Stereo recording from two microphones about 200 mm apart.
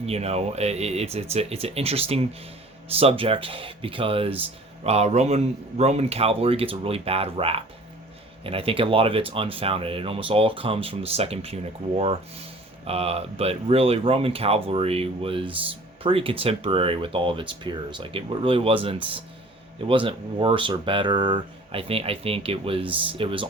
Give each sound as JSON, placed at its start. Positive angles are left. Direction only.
{"t": 0.0, "sound": "speech", "side_deg": -30}